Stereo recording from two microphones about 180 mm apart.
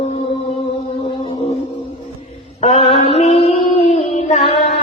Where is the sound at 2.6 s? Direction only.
35° left (ahead or behind).